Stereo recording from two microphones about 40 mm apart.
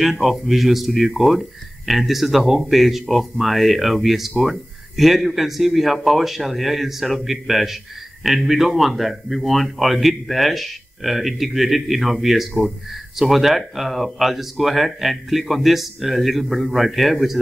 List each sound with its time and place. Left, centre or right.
0.0 s a man's voice: centre